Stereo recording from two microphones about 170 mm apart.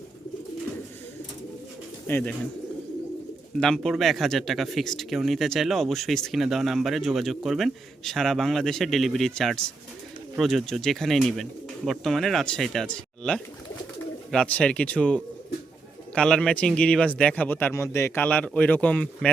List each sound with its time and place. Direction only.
2.0 s speech: 10° left (ahead or behind)
3.6 s speech: centre (ahead or behind)